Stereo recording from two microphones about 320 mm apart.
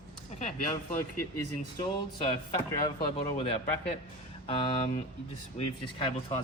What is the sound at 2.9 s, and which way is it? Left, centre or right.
Speech, centre.